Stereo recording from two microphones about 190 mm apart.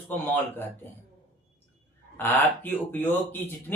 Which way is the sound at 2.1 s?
10° left (ahead or behind).